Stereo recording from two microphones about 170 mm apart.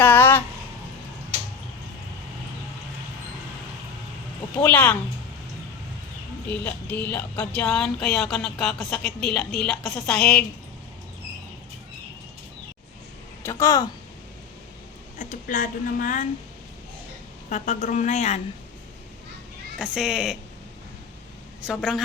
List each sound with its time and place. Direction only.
0.0 s a sound: 10° left (ahead or behind)
4.5 s speech: 10° left (ahead or behind)
6.5 s speech: 10° left (ahead or behind)
13.4 s speech: 15° left (ahead or behind)
15.2 s speech: 50° left (ahead or behind)
17.5 s speech: 45° left (ahead or behind)
19.8 s speech: 5° right (ahead or behind)
21.6 s speech: 5° right (ahead or behind)